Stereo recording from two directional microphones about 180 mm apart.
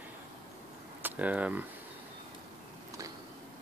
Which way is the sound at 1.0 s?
10° right (ahead or behind).